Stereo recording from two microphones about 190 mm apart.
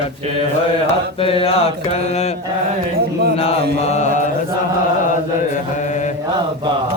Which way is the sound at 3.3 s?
35° left (ahead or behind).